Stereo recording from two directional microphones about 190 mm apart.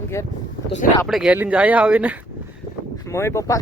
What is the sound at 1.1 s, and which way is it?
Speech, 5° right (ahead or behind).